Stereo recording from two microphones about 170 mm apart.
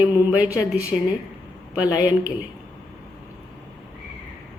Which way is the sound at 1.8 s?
20° left (ahead or behind).